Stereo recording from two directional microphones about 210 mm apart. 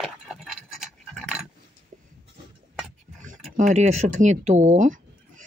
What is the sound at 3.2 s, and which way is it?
Speech, 40° right (ahead or behind).